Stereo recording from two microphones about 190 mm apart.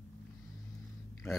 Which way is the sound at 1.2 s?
15° left (ahead or behind).